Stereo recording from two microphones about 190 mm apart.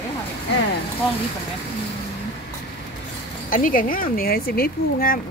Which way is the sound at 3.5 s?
45° left (ahead or behind).